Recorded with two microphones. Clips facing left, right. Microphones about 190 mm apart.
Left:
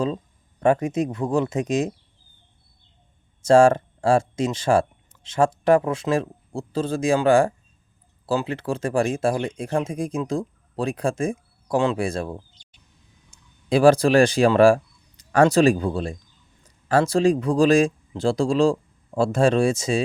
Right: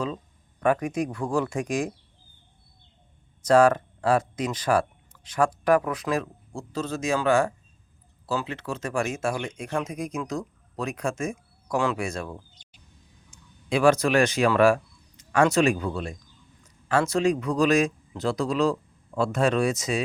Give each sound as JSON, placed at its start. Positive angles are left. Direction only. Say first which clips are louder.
{"t": 0.6, "sound": "speech", "louder": "left 4 dB", "side_deg": 25}
{"t": 3.4, "sound": "speech", "louder": "left 4 dB", "side_deg": 30}